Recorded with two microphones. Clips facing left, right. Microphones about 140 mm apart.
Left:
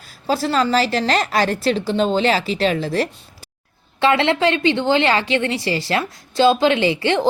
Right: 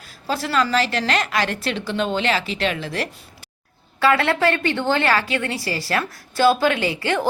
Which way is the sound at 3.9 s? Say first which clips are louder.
Left 2 dB; 25° left (ahead or behind).